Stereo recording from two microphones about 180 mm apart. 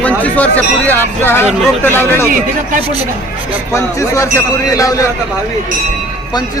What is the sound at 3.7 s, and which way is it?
Speech, 15° left (ahead or behind).